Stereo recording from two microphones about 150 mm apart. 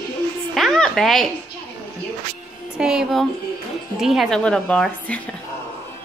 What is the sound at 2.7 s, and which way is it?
A woman's voice, 5° right (ahead or behind).